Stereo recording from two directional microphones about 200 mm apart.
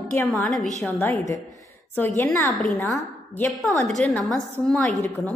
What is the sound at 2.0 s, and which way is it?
A woman's voice, 5° left (ahead or behind).